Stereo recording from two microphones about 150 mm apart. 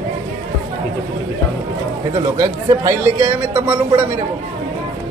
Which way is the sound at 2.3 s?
20° right (ahead or behind).